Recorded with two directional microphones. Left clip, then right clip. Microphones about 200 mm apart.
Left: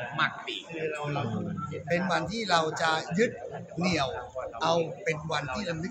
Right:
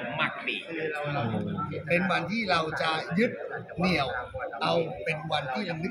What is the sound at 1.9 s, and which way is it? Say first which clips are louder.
A man's voice: right 1 dB; 25° left (ahead or behind).